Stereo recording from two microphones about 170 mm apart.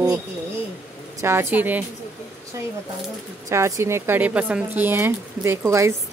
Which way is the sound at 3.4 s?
15° right (ahead or behind).